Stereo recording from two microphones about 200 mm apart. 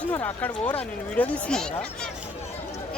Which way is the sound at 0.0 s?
10° left (ahead or behind).